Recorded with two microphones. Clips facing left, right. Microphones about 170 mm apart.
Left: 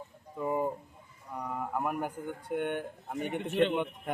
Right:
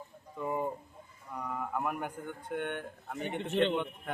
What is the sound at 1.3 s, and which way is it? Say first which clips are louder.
Speech: left 1 dB; 10° left (ahead or behind).